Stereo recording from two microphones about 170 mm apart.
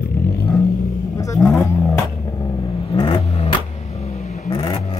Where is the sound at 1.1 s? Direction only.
20° left (ahead or behind).